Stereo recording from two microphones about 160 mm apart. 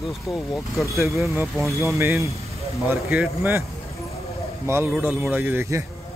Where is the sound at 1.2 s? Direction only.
20° right (ahead or behind).